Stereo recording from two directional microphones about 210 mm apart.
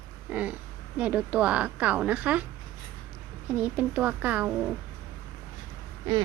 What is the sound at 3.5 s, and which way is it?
A woman's voice, 5° right (ahead or behind).